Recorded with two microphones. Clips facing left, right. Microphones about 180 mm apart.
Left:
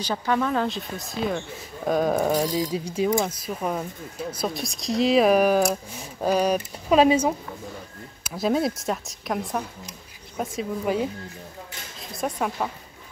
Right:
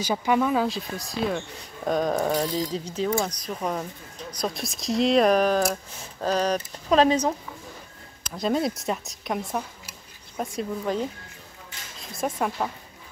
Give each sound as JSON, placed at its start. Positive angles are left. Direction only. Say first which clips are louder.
{"t": 0.0, "sound": "a woman's voice", "louder": "right 2 dB", "side_deg": -10}